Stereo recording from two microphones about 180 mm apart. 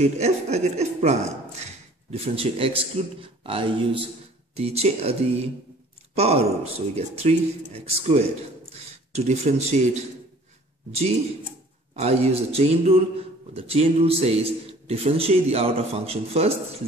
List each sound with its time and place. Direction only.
0.0 s a man's voice: 35° right (ahead or behind)
6.1 s a man's voice: 35° right (ahead or behind)